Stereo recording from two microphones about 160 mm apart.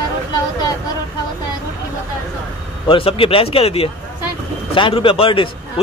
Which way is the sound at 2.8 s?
35° left (ahead or behind).